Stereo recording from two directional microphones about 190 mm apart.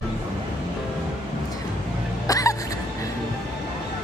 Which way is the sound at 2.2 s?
20° left (ahead or behind).